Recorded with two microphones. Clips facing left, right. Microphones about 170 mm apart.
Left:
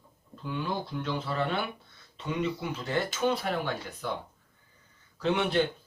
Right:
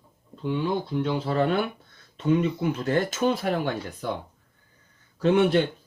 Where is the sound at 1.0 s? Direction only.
40° right (ahead or behind).